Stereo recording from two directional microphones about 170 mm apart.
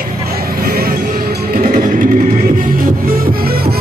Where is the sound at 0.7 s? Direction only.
60° right (ahead or behind).